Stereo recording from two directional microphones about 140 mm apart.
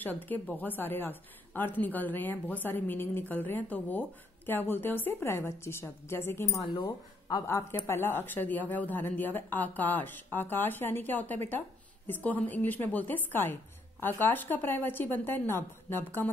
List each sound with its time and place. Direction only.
0.0 s a woman's voice: 15° left (ahead or behind)
6.8 s speech: 30° left (ahead or behind)
7.4 s a woman's voice: 20° left (ahead or behind)